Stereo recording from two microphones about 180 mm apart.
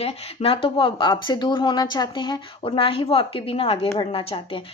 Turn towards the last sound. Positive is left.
turn(degrees=30)  # may be behind; listen again after turning